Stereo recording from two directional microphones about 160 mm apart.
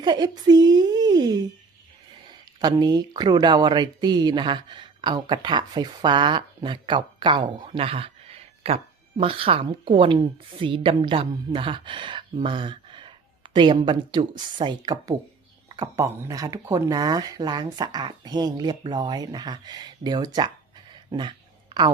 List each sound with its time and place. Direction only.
0.0 s a woman's voice: 25° right (ahead or behind)